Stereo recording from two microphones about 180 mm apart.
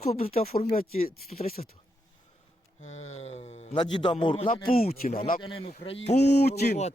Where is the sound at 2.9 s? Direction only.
90° left.